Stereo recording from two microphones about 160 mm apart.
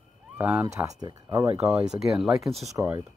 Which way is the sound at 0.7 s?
20° right (ahead or behind).